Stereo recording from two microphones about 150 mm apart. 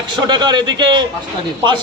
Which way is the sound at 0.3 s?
30° right (ahead or behind).